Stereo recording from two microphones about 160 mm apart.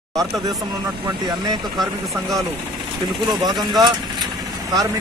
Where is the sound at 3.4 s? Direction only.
Centre (ahead or behind).